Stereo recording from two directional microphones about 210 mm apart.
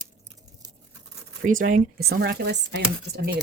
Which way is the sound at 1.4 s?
40° right (ahead or behind).